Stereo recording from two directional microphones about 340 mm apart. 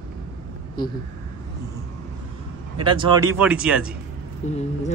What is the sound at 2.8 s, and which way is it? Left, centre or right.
Speech, centre.